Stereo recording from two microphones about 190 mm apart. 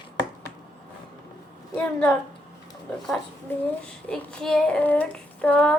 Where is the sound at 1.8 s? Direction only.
5° left (ahead or behind).